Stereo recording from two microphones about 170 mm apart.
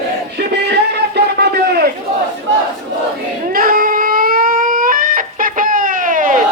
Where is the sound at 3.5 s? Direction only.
60° right (ahead or behind).